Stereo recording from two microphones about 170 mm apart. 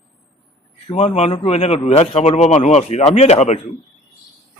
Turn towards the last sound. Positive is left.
turn(degrees=40)  # may be behind; listen again after turning